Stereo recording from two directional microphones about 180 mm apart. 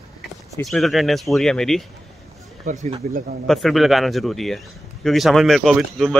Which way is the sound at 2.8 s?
45° right (ahead or behind).